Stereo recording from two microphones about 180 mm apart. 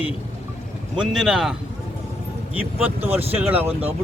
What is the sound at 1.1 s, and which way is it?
Speech, centre (ahead or behind).